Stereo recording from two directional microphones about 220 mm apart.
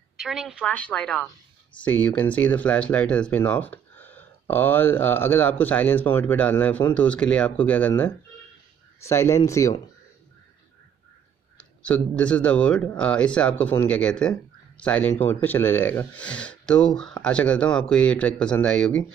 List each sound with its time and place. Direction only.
0.2 s speech: centre (ahead or behind); by 9.8 s 15° left (ahead or behind)
11.5 s speech: 5° left (ahead or behind)